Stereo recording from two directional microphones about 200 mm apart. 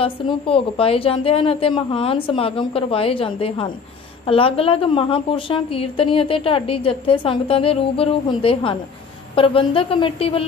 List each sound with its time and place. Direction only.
0.0 s a woman's voice: 30° left (ahead or behind)